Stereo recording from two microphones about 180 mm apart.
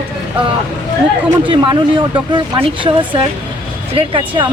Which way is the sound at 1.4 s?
25° right (ahead or behind).